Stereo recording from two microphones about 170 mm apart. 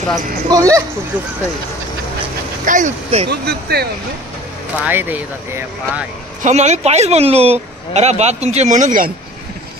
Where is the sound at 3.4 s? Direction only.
70° right (ahead or behind).